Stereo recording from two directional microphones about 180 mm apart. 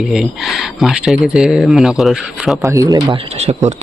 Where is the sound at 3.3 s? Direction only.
35° right (ahead or behind).